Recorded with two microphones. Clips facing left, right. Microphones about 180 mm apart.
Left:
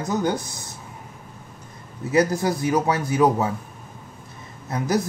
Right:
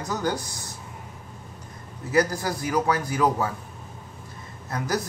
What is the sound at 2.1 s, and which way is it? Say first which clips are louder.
Speech: left 3 dB; 20° left (ahead or behind).